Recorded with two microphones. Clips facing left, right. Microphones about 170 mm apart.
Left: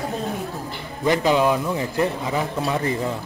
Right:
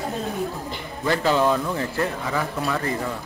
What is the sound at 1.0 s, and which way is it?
A man's voice, 15° left (ahead or behind).